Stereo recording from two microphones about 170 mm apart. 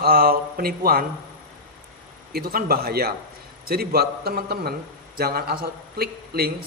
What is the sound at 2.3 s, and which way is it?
A man's voice, 60° right (ahead or behind).